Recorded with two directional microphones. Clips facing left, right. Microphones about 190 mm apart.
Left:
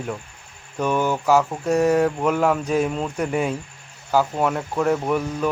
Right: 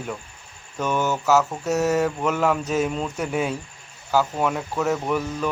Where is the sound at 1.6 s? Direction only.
5° right (ahead or behind).